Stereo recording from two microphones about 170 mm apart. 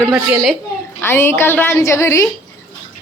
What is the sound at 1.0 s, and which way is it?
Speech, 15° left (ahead or behind).